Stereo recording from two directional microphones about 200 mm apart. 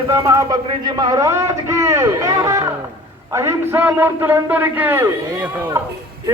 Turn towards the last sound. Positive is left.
turn(degrees=-10)  # may be behind; listen again after turning